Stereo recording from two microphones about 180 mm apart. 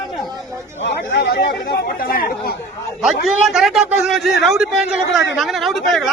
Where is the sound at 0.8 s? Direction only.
75° left (ahead or behind); by 2.6 s 55° left (ahead or behind).